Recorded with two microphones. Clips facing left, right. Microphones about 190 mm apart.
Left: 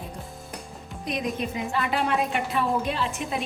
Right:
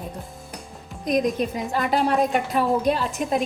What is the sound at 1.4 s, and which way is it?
A woman's voice, 40° right (ahead or behind).